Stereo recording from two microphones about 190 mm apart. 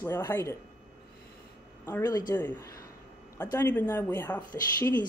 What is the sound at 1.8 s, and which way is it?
A man's voice, 15° left (ahead or behind).